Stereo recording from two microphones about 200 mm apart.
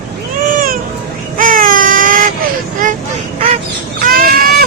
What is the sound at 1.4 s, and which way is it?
Baby cry, 45° right (ahead or behind).